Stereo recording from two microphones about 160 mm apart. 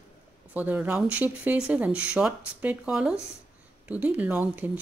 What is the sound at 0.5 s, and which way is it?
Speech, 10° right (ahead or behind).